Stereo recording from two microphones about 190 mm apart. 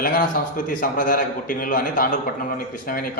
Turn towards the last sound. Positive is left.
turn(degrees=50)  # may be behind; listen again after turning